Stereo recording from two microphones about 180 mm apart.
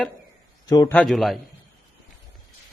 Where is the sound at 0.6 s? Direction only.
20° left (ahead or behind).